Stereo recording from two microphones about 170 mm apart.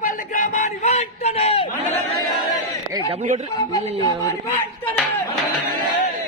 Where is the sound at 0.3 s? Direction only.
45° left (ahead or behind).